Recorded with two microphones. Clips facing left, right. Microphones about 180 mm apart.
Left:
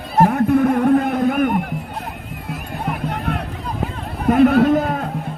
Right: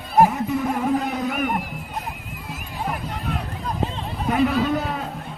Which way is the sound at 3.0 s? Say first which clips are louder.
Left 5 dB; 55° left (ahead or behind).